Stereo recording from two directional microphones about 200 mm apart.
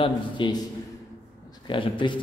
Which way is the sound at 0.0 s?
25° left (ahead or behind).